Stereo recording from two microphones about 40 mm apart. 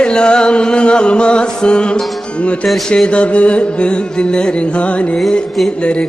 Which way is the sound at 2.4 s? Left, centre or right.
Left.